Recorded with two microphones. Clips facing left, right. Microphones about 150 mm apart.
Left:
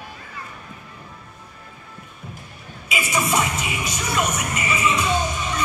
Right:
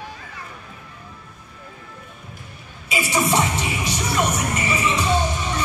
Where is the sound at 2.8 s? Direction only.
30° right (ahead or behind).